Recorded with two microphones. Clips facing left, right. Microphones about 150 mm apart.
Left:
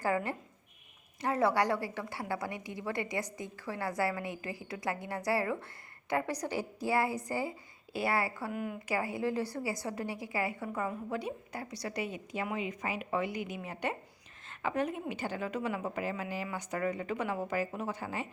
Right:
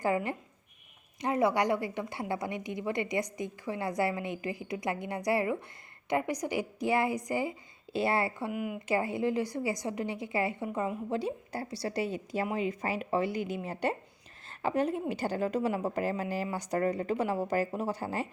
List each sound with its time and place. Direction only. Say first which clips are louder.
0.0 s a woman's voice: right 2 dB; 20° right (ahead or behind)
8.5 s a woman's voice: right 3 dB; 10° right (ahead or behind)
8.9 s a woman's voice: right 4 dB; 25° right (ahead or behind)